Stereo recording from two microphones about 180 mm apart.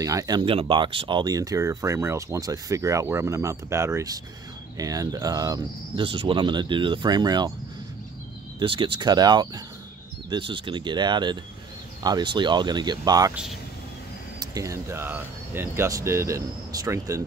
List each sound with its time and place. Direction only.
0.0 s speech: 20° right (ahead or behind)
8.5 s speech: 30° right (ahead or behind)
13.3 s speech: 5° right (ahead or behind)
14.4 s speech: 20° right (ahead or behind)